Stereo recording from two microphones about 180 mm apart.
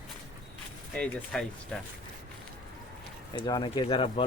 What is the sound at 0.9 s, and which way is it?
Speech, 5° left (ahead or behind).